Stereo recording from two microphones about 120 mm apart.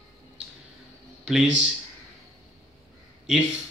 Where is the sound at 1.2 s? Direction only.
5° right (ahead or behind).